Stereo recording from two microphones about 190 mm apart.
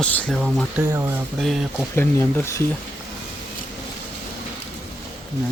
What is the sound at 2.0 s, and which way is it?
Speech, 15° left (ahead or behind).